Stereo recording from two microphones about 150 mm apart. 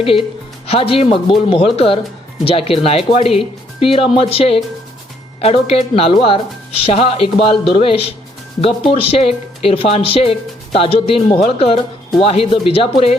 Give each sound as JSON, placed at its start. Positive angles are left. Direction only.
{"t": 0.7, "sound": "speech", "side_deg": 40}